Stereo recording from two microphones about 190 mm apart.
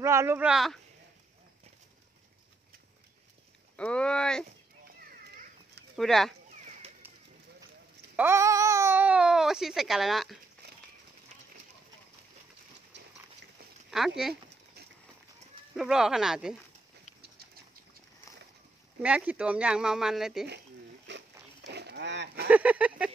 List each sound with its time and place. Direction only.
0.0 s speech: 15° right (ahead or behind)
3.7 s speech: 5° left (ahead or behind)
5.9 s speech: centre (ahead or behind)
8.2 s speech: 15° right (ahead or behind)
13.8 s speech: centre (ahead or behind)
15.7 s speech: 5° right (ahead or behind)
19.0 s speech: 5° right (ahead or behind)
21.1 s a sound: 65° right (ahead or behind)
22.5 s speech: 5° right (ahead or behind)